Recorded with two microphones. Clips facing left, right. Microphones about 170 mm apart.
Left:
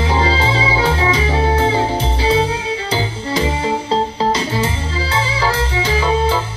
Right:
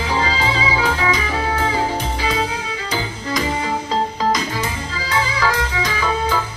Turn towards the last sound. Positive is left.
turn(degrees=30)  # may be behind; listen again after turning